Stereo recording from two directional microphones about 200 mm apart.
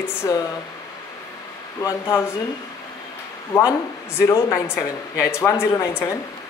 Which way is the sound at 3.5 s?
15° left (ahead or behind).